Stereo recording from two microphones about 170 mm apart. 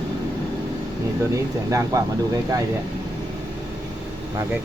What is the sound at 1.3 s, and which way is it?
Speech, 20° right (ahead or behind).